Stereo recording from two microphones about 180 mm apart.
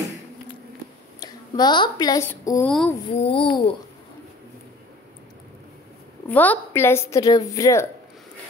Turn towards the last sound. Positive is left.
turn(degrees=20)  # may be behind; listen again after turning